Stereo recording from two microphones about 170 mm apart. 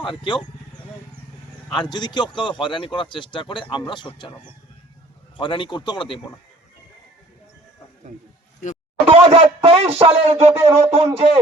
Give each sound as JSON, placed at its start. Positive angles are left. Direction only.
{"t": 0.0, "sound": "speech", "side_deg": 30}
{"t": 1.7, "sound": "speech", "side_deg": 25}
{"t": 5.4, "sound": "speech", "side_deg": 30}
{"t": 9.0, "sound": "speech", "side_deg": -35}